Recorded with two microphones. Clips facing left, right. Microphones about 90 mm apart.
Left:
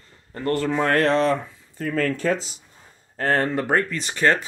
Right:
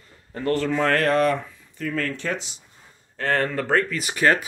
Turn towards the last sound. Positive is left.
turn(degrees=-10)  # may be behind; listen again after turning